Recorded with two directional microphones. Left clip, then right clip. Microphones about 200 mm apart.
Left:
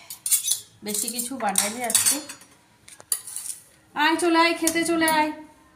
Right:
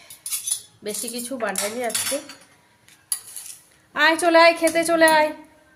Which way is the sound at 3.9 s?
50° right (ahead or behind).